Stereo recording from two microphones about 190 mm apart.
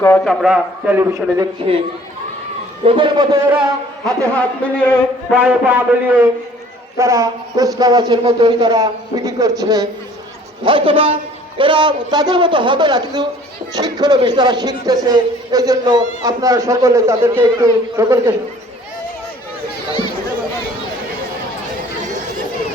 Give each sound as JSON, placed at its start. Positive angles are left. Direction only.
{"t": 0.0, "sound": "a man's voice", "side_deg": 10}
{"t": 0.3, "sound": "a man's voice", "side_deg": -5}
{"t": 2.8, "sound": "a man's voice", "side_deg": -25}
{"t": 4.0, "sound": "a man's voice", "side_deg": 5}
{"t": 5.3, "sound": "a man's voice", "side_deg": -10}